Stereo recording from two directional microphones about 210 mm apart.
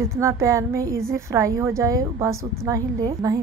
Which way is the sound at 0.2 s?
15° right (ahead or behind).